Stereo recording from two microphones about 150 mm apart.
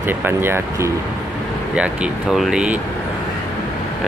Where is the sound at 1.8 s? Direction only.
5° right (ahead or behind).